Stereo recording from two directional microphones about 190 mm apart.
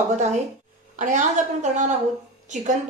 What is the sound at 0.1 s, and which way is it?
Speech, 40° right (ahead or behind).